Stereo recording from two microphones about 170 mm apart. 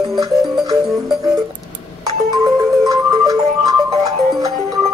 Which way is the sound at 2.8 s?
20° right (ahead or behind).